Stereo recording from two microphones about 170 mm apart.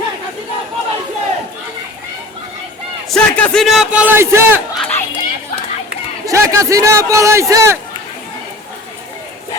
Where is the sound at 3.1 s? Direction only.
5° left (ahead or behind); by 4.6 s 15° right (ahead or behind).